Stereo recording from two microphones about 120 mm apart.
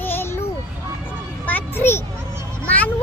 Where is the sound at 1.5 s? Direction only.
15° left (ahead or behind).